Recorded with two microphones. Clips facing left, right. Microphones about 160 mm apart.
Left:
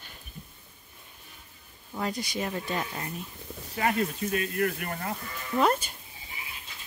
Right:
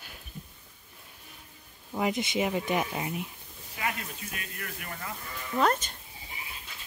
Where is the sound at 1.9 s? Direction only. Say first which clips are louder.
Right 3 dB; 20° right (ahead or behind).